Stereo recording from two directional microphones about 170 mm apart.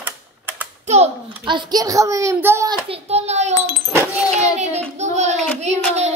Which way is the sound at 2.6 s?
35° right (ahead or behind).